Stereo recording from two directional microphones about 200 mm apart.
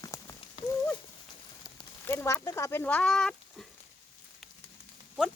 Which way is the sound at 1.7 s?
15° left (ahead or behind).